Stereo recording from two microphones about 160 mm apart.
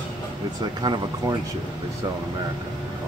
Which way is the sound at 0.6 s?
25° right (ahead or behind).